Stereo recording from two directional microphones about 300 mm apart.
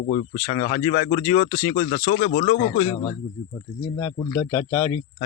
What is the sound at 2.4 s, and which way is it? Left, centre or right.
Speech, centre.